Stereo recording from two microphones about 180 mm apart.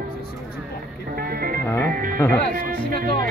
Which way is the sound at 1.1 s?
55° right (ahead or behind).